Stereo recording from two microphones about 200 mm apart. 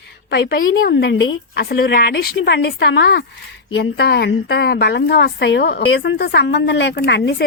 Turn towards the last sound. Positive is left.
turn(degrees=60)  # may be behind; listen again after turning